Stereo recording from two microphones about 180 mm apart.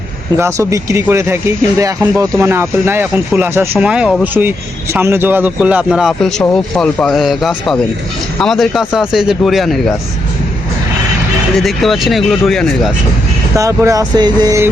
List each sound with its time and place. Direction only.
0.3 s speech: 15° right (ahead or behind)
11.6 s speech: centre (ahead or behind)
13.6 s speech: 15° right (ahead or behind)